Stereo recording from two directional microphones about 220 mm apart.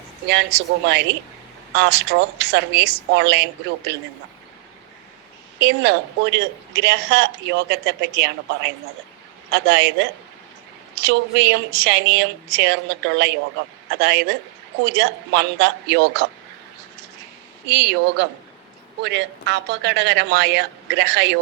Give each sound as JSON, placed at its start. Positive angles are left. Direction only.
{"t": 0.3, "sound": "a man's voice", "side_deg": -50}
{"t": 5.5, "sound": "a man's voice", "side_deg": -50}
{"t": 14.0, "sound": "a man's voice", "side_deg": -50}
{"t": 17.7, "sound": "a man's voice", "side_deg": -50}